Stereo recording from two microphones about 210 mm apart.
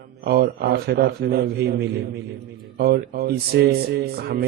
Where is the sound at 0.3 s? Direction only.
50° right (ahead or behind).